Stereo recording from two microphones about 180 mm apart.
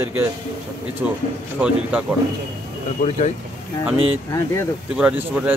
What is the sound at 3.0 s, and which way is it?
Speech, 40° left (ahead or behind).